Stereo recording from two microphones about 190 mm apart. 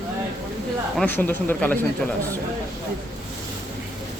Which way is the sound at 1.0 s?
10° left (ahead or behind).